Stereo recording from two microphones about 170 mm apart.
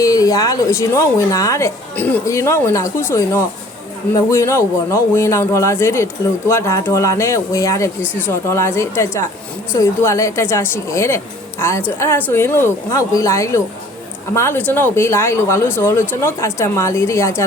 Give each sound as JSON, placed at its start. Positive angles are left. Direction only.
{"t": 0.0, "sound": "speech", "side_deg": 20}